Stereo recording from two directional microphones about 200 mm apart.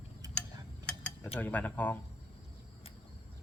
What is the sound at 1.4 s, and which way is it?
Speech, 10° left (ahead or behind).